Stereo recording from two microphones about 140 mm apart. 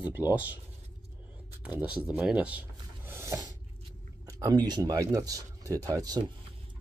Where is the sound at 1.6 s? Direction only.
10° right (ahead or behind); by 6.3 s 30° right (ahead or behind).